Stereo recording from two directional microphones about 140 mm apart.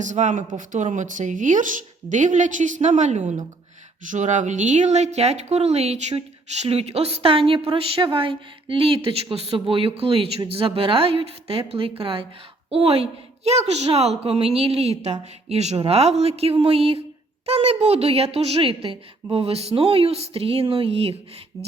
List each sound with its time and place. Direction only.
0.0 s speech: 60° right (ahead or behind); by 21.2 s 45° right (ahead or behind)
21.5 s speech: 25° right (ahead or behind)